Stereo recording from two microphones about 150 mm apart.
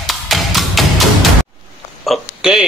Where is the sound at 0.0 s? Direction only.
Centre (ahead or behind).